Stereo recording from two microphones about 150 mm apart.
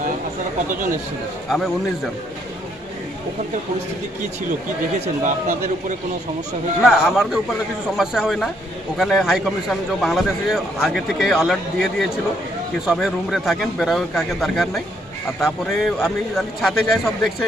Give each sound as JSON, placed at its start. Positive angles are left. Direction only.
{"t": 1.5, "sound": "speech", "side_deg": 0}
{"t": 4.9, "sound": "speech", "side_deg": -60}
{"t": 6.8, "sound": "speech", "side_deg": 0}